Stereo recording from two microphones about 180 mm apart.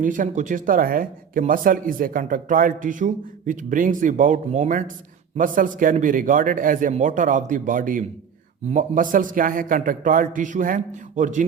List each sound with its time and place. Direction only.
0.0 s speech: 45° right (ahead or behind)